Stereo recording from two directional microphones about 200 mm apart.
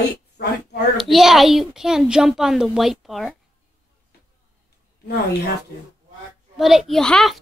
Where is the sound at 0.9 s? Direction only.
Centre (ahead or behind).